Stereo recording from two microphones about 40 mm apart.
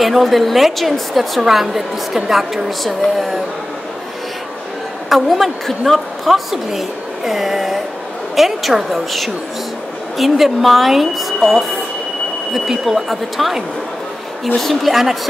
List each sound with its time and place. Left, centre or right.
0.0 s a woman's voice: centre
5.1 s a woman's voice: centre
10.1 s a woman's voice: centre
14.6 s a woman's voice: centre